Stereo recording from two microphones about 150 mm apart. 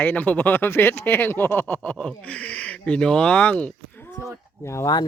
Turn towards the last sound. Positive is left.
turn(degrees=20)  # may be behind; listen again after turning